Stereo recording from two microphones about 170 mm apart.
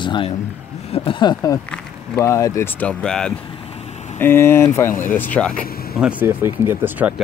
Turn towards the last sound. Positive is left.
turn(degrees=-10)  # may be behind; listen again after turning